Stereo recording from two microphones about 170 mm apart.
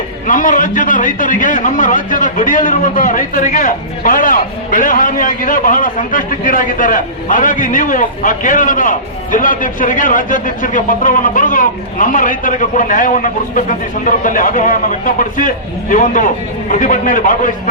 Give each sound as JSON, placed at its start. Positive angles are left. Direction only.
{"t": 0.3, "sound": "a man's voice", "side_deg": 50}